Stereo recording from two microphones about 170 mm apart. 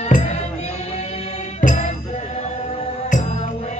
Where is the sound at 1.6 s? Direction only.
45° left (ahead or behind).